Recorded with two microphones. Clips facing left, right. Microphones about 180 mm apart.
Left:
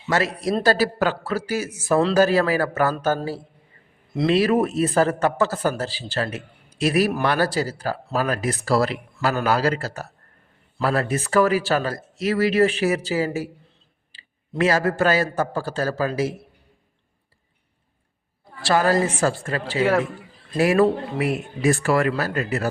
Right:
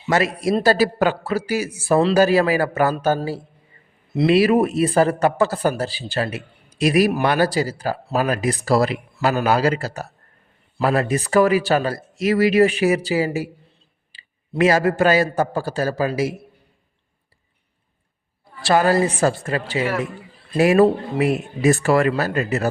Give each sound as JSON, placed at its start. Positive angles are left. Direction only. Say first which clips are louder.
{"t": 0.1, "sound": "a man's voice", "louder": "right 3 dB", "side_deg": -10}
{"t": 18.6, "sound": "a man's voice", "louder": "right 2 dB", "side_deg": -20}